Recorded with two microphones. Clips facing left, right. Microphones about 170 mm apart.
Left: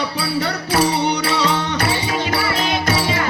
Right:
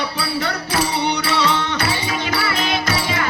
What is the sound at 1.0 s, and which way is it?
Music, 40° left (ahead or behind).